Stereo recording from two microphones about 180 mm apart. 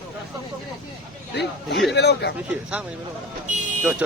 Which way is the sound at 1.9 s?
70° left (ahead or behind).